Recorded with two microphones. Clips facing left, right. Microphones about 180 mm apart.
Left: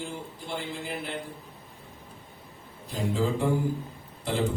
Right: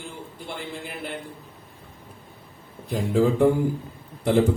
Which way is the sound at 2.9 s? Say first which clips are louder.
Right 6 dB; 55° right (ahead or behind).